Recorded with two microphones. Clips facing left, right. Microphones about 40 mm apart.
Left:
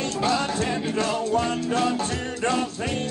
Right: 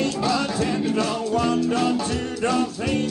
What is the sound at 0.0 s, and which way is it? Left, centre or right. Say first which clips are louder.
Music: right 1 dB; left.